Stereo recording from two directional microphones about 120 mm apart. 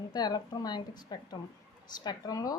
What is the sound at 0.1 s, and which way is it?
A woman's voice, 35° left (ahead or behind).